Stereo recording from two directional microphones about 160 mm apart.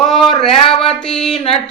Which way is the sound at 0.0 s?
Centre (ahead or behind).